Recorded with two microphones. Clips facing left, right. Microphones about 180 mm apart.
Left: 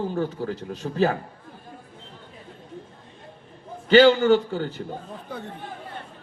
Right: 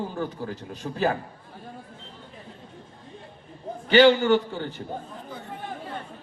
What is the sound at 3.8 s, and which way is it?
Speech, 40° left (ahead or behind).